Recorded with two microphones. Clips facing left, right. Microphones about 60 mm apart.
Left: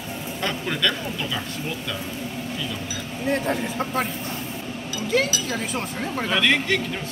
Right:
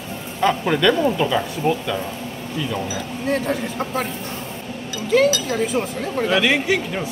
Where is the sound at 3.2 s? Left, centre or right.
Centre.